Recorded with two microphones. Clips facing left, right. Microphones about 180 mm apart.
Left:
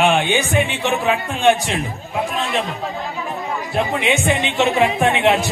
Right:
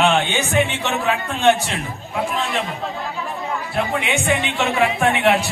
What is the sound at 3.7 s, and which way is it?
Speech, 20° left (ahead or behind).